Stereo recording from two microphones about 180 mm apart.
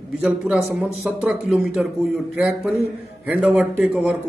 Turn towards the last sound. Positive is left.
turn(degrees=-10)  # may be behind; listen again after turning